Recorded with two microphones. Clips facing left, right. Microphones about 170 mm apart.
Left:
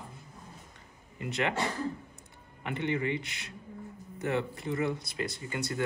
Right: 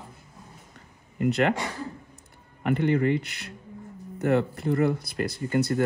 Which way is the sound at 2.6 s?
45° right (ahead or behind).